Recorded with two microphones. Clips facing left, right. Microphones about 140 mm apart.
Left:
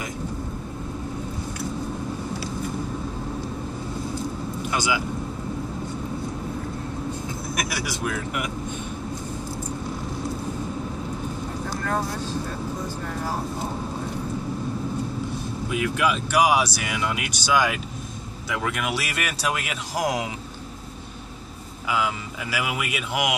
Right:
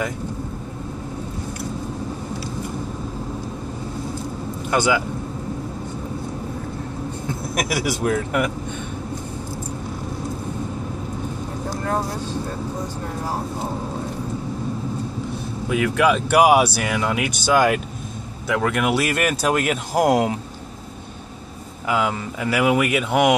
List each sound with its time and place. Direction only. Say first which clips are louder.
4.6 s speech: right 7 dB; 55° right (ahead or behind)
7.7 s speech: right 7 dB; 50° right (ahead or behind)
15.8 s speech: right 6 dB; 55° right (ahead or behind)
21.8 s speech: right 4 dB; 55° right (ahead or behind)